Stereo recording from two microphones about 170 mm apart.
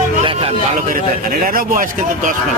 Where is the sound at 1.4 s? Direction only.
55° right (ahead or behind).